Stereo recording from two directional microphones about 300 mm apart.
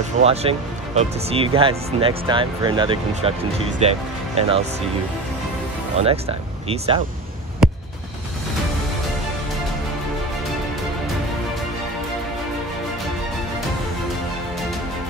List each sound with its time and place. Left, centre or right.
0.2 s speech: right
5.9 s speech: centre
7.6 s music: centre